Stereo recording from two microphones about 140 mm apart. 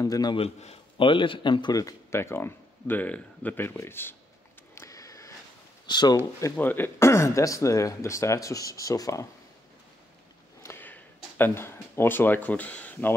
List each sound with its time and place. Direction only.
0.0 s speech: 25° left (ahead or behind)
0.4 s speech: 45° left (ahead or behind); by 4.1 s 20° left (ahead or behind)
4.7 s a sound: 25° left (ahead or behind)
5.9 s speech: 30° left (ahead or behind)
6.5 s speech: 15° left (ahead or behind)
10.6 s a sound: 15° left (ahead or behind)